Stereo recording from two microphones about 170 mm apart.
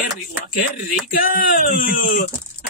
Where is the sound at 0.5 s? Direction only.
55° left (ahead or behind).